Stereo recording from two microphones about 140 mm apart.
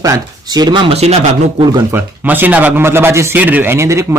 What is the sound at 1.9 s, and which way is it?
A man's voice, 15° right (ahead or behind).